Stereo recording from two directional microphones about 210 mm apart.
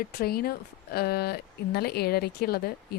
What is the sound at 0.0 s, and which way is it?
Speech, 45° left (ahead or behind).